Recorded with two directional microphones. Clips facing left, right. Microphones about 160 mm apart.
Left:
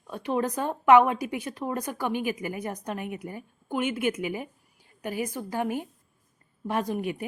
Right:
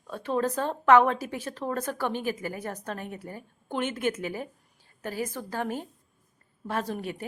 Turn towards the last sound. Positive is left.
turn(degrees=15)  # may be behind; listen again after turning